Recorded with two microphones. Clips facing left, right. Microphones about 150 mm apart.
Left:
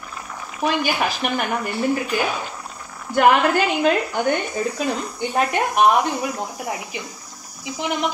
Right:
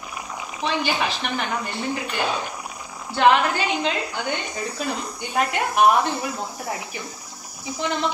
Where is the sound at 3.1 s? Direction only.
45° left (ahead or behind).